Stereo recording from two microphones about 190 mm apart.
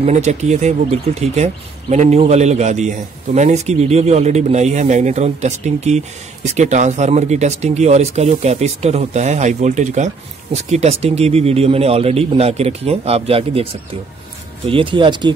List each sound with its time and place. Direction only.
0.0 s speech: 35° right (ahead or behind)
14.7 s speech: 25° right (ahead or behind)